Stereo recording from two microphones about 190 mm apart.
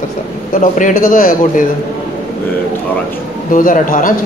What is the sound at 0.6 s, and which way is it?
A man's voice, 45° left (ahead or behind).